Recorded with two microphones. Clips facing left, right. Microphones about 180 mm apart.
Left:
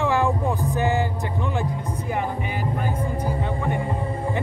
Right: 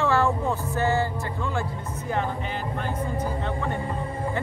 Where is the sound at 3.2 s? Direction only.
10° left (ahead or behind).